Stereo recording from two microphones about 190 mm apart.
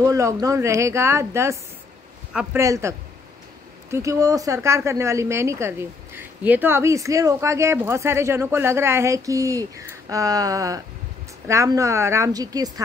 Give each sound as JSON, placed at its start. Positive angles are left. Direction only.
{"t": 0.0, "sound": "a woman's voice", "side_deg": -15}